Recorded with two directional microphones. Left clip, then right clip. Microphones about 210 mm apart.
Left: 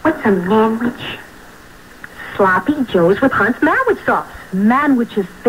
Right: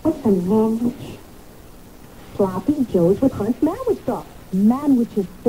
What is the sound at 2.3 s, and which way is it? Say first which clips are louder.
A woman's voice: left 7 dB; 25° right (ahead or behind).